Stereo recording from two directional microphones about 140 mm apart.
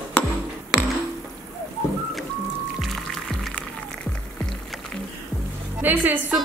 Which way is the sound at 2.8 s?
Centre (ahead or behind).